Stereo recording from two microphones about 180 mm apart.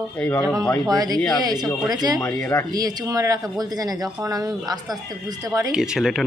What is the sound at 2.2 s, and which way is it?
Speech, 15° left (ahead or behind).